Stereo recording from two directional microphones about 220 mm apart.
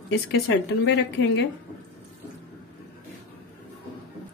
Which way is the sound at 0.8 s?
50° left (ahead or behind).